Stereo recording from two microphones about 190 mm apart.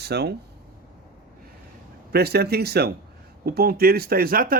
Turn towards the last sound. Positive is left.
turn(degrees=-50)  # may be behind; listen again after turning